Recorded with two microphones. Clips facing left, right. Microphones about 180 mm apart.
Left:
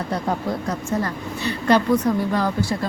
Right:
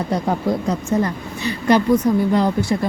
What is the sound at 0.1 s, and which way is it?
Speech, 15° right (ahead or behind).